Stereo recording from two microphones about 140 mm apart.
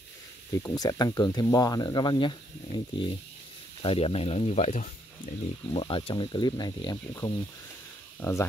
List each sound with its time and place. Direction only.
0.6 s speech: 25° left (ahead or behind); by 5.3 s 60° left (ahead or behind)
5.7 s speech: 35° left (ahead or behind)
8.2 s speech: 20° left (ahead or behind)